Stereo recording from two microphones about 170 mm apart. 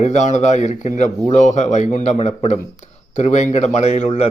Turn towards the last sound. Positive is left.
turn(degrees=40)  # may be behind; listen again after turning